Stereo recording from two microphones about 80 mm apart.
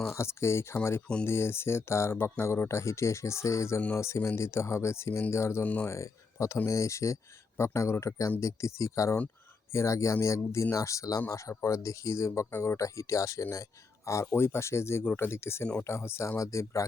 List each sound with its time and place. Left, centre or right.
0.1 s speech: left
5.6 s speech: centre
5.9 s speech: left